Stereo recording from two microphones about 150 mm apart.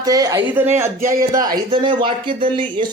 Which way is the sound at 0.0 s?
25° right (ahead or behind).